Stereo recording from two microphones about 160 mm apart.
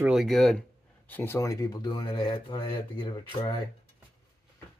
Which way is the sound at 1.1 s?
15° left (ahead or behind).